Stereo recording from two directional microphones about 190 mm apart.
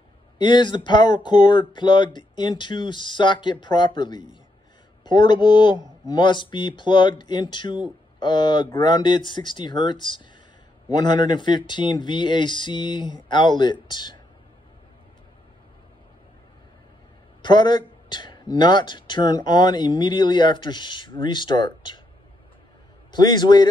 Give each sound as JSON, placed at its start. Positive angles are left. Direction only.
{"t": 0.4, "sound": "speech", "side_deg": 25}
{"t": 17.4, "sound": "speech", "side_deg": 25}
{"t": 23.1, "sound": "speech", "side_deg": 20}